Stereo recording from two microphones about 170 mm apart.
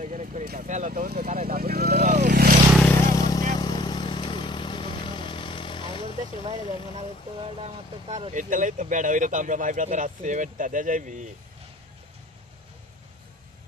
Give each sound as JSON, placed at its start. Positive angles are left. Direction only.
{"t": 0.0, "sound": "vehicle", "side_deg": -45}
{"t": 2.1, "sound": "vehicle", "side_deg": -55}
{"t": 2.8, "sound": "vehicle", "side_deg": 15}
{"t": 7.6, "sound": "speech", "side_deg": -35}